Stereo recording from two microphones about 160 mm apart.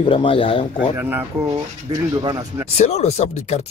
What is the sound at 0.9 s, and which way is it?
Speech, 15° right (ahead or behind).